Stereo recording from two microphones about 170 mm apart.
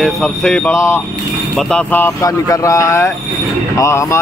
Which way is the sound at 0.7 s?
15° left (ahead or behind).